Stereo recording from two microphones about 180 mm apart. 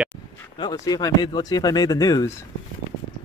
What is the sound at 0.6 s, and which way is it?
Speech, 20° left (ahead or behind).